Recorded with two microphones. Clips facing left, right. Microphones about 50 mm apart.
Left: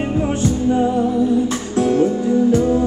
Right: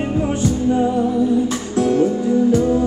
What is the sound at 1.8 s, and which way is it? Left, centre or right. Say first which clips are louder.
Music: even; left.